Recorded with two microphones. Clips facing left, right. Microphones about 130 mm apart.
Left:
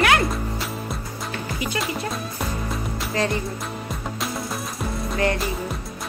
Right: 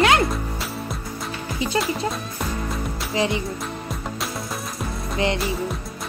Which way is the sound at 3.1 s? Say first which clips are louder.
Right 1 dB; 15° right (ahead or behind).